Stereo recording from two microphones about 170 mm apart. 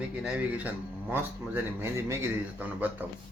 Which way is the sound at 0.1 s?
5° right (ahead or behind).